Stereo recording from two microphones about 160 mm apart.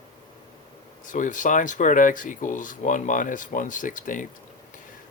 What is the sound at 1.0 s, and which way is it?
Speech, 55° left (ahead or behind).